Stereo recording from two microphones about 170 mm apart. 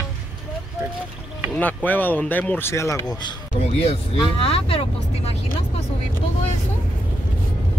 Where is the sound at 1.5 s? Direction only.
10° left (ahead or behind); by 3.3 s 25° left (ahead or behind).